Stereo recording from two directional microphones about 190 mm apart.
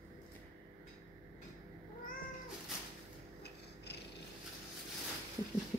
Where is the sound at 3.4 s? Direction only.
60° left (ahead or behind).